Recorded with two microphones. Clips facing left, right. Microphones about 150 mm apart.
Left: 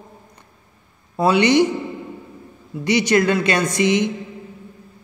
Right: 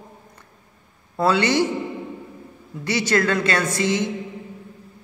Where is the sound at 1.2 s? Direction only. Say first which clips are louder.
Left 4 dB; 15° left (ahead or behind).